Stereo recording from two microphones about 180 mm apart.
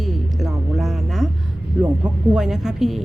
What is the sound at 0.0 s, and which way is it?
Music, centre (ahead or behind).